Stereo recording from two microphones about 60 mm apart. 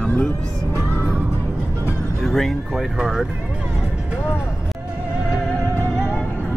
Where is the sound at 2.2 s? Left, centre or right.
Centre.